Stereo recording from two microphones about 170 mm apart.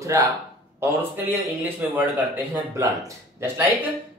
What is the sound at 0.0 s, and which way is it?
Speech, 20° right (ahead or behind).